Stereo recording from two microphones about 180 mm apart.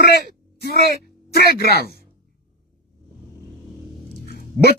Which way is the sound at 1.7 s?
60° right (ahead or behind).